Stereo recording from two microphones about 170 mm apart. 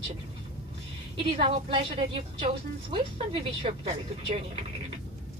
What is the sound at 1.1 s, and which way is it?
A woman's voice, 35° right (ahead or behind).